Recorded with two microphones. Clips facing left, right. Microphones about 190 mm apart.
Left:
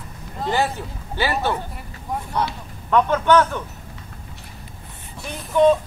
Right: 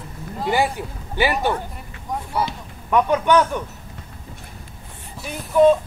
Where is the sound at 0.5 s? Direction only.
15° right (ahead or behind).